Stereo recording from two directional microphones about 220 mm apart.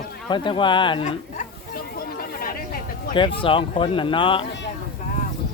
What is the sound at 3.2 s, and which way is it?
Speech, 25° left (ahead or behind).